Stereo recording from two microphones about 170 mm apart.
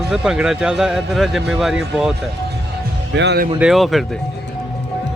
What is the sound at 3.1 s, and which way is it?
Speech, 85° right.